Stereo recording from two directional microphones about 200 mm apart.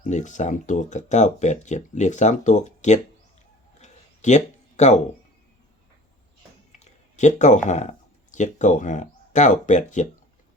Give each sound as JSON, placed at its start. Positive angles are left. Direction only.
{"t": 0.0, "sound": "speech", "side_deg": 35}
{"t": 3.8, "sound": "a sound", "side_deg": 35}
{"t": 6.7, "sound": "speech", "side_deg": 35}